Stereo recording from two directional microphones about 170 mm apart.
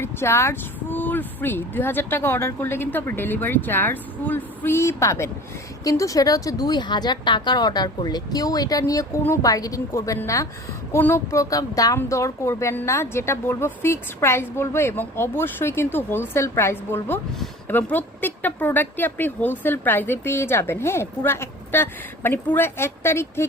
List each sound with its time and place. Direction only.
0.0 s a woman's voice: 15° left (ahead or behind)